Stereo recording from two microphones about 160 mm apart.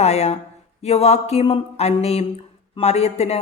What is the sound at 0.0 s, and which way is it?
Speech, 40° left (ahead or behind).